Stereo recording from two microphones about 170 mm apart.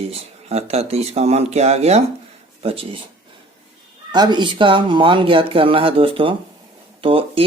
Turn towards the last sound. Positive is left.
turn(degrees=-30)  # may be behind; listen again after turning